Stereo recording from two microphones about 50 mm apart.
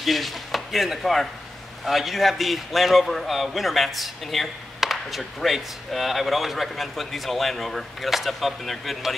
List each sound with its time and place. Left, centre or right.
0.0 s a man's voice: centre